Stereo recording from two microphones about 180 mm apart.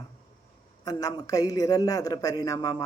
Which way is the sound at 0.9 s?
20° left (ahead or behind).